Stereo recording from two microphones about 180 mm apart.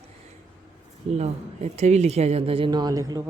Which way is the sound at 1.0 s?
35° right (ahead or behind).